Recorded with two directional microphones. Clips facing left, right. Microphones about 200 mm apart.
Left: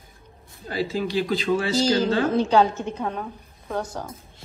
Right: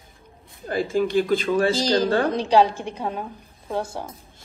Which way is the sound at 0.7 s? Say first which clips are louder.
Right 4 dB; 50° right (ahead or behind).